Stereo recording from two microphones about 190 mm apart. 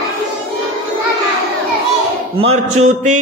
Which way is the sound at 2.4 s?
35° right (ahead or behind).